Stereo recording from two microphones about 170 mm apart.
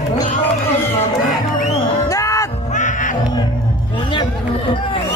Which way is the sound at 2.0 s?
20° left (ahead or behind).